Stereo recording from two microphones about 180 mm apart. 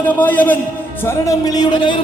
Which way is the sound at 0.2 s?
10° left (ahead or behind).